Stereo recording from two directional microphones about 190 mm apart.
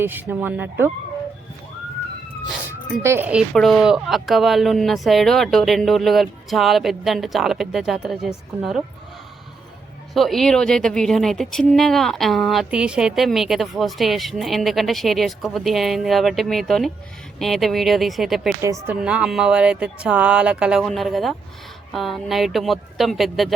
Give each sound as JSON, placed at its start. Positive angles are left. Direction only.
{"t": 0.0, "sound": "speech", "side_deg": -10}
{"t": 3.0, "sound": "speech", "side_deg": -10}
{"t": 3.5, "sound": "speech", "side_deg": 0}
{"t": 10.2, "sound": "speech", "side_deg": 0}
{"t": 18.6, "sound": "speech", "side_deg": -15}